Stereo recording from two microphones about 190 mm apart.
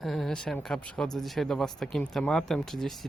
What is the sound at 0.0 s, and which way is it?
Speech, centre (ahead or behind).